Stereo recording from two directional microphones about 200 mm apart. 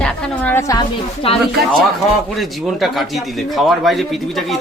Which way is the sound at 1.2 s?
30° left (ahead or behind).